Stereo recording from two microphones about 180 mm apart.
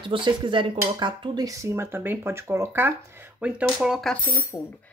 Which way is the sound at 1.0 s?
25° right (ahead or behind).